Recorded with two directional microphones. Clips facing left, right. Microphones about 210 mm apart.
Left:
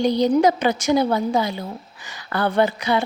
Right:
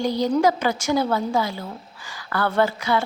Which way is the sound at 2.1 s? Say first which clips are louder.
Left 2 dB; 20° left (ahead or behind).